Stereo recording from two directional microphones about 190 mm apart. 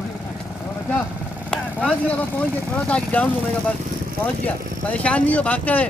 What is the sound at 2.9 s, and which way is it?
Speech, 5° left (ahead or behind).